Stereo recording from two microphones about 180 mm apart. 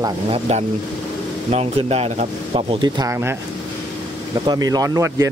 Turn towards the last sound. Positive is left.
turn(degrees=-15)  # may be behind; listen again after turning